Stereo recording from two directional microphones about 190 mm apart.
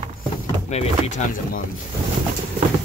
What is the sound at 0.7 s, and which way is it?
Speech, 35° left (ahead or behind).